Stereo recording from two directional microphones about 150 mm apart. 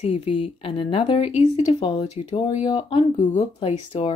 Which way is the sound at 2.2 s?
45° left (ahead or behind).